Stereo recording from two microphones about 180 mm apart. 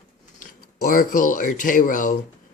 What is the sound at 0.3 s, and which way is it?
Speech, 50° left (ahead or behind).